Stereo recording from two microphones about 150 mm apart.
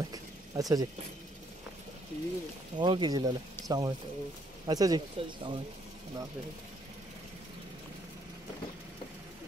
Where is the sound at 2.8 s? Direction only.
30° right (ahead or behind).